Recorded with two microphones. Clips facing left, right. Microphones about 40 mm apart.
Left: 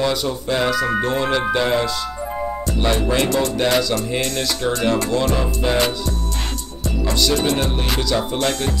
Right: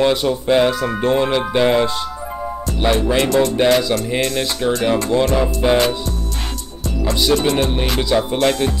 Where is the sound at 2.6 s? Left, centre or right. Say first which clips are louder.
Right 4 dB; centre.